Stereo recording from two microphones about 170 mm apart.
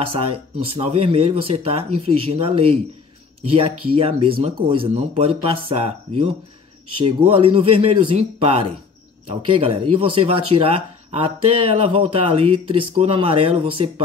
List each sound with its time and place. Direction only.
0.7 s speech: 35° right (ahead or behind)